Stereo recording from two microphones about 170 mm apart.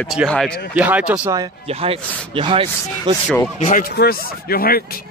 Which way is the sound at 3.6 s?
50° left (ahead or behind).